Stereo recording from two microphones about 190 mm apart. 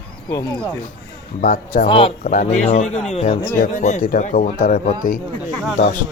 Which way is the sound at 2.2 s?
45° left (ahead or behind).